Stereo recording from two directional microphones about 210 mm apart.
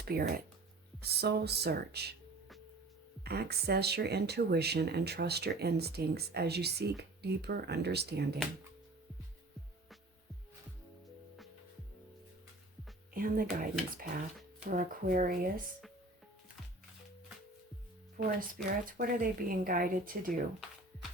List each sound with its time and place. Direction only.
0.0 s speech: 45° right (ahead or behind)
3.2 s speech: 50° right (ahead or behind)
13.1 s speech: 45° right (ahead or behind)
18.3 s speech: 40° right (ahead or behind)